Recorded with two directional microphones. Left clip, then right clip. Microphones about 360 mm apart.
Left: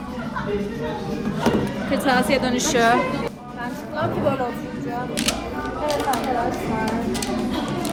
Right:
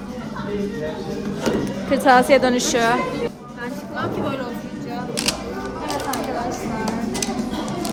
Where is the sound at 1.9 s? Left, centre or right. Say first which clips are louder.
Right 6 dB; centre.